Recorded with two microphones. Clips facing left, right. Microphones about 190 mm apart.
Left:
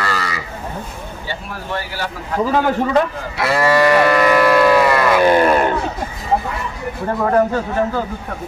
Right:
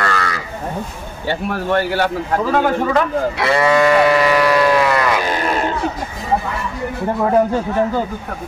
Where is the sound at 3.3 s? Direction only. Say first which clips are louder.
Left 1 dB; 5° left (ahead or behind).